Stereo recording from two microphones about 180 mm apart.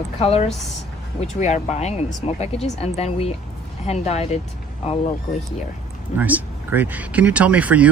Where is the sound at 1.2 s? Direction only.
40° left (ahead or behind).